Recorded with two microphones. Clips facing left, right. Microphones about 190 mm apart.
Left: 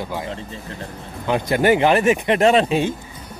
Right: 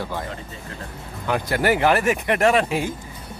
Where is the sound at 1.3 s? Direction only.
20° left (ahead or behind).